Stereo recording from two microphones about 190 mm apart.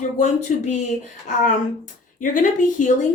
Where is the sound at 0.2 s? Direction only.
40° left (ahead or behind).